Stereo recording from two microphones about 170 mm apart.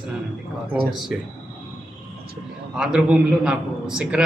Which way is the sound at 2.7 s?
5° right (ahead or behind).